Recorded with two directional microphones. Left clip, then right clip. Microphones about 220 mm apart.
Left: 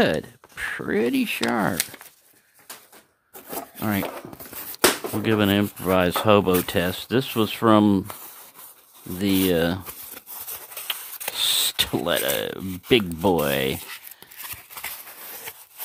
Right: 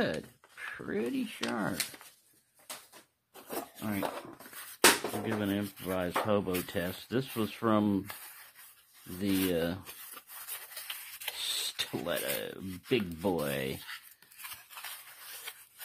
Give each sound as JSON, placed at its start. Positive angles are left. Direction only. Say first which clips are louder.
{"t": 0.0, "sound": "speech", "louder": "left 12 dB", "side_deg": 40}
{"t": 3.4, "sound": "rub", "louder": "left 9 dB", "side_deg": 50}
{"t": 5.2, "sound": "speech", "louder": "left 13 dB", "side_deg": 50}
{"t": 9.2, "sound": "speech", "louder": "left 10 dB", "side_deg": 35}
{"t": 10.7, "sound": "a sound", "louder": "left 14 dB", "side_deg": 30}